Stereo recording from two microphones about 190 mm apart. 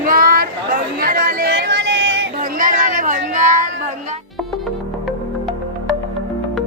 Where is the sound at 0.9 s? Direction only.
50° right (ahead or behind); by 2.3 s 70° right (ahead or behind).